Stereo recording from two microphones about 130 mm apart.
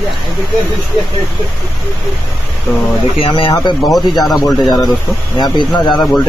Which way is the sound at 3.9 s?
Centre (ahead or behind).